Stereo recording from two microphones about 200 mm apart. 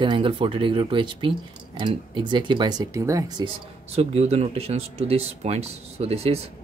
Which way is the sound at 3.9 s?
30° right (ahead or behind).